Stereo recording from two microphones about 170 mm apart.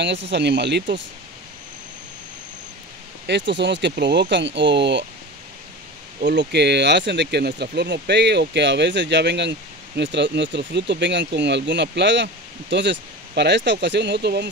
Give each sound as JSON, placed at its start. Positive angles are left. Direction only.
{"t": 0.3, "sound": "speech", "side_deg": -90}
{"t": 3.3, "sound": "speech", "side_deg": -90}
{"t": 6.2, "sound": "speech", "side_deg": -85}